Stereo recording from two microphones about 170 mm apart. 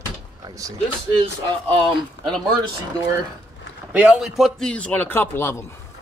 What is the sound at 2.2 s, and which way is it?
Speech, 90° left.